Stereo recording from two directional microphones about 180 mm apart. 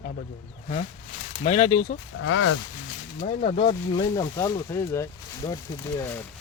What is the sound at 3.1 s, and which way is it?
Speech, 35° left (ahead or behind).